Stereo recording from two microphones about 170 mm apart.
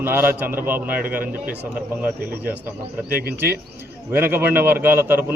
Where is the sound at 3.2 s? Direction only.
65° right (ahead or behind).